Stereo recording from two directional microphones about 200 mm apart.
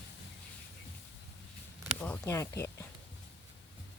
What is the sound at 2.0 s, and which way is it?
Speech, 10° left (ahead or behind).